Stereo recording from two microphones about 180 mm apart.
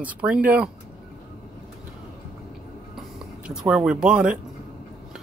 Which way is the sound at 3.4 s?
5° right (ahead or behind).